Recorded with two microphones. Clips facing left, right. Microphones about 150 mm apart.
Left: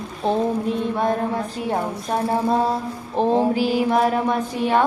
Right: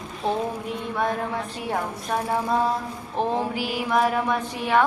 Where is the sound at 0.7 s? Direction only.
25° left (ahead or behind).